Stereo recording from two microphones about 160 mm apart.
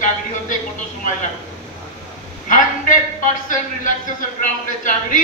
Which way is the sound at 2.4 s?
55° left (ahead or behind).